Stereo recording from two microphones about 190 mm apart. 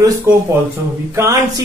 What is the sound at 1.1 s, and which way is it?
Speech, 15° right (ahead or behind).